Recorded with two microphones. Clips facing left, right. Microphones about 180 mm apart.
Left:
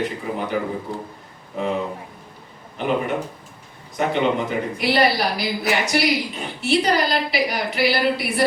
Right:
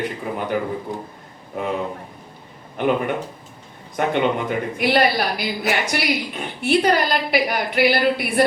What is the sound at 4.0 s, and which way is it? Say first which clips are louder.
Speech: right 1 dB; 55° right (ahead or behind).